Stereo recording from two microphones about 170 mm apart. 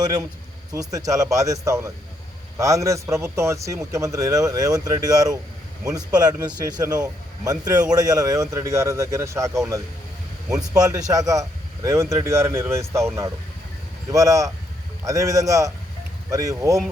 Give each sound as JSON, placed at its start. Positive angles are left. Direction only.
{"t": 0.7, "sound": "a man's voice", "side_deg": -20}
{"t": 14.1, "sound": "a man's voice", "side_deg": -20}